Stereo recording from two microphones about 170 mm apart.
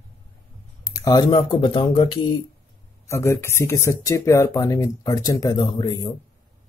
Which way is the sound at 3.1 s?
15° left (ahead or behind).